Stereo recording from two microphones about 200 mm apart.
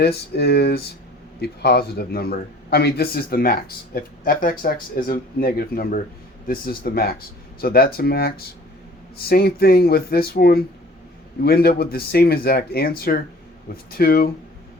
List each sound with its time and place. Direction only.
0.0 s speech: 55° left (ahead or behind)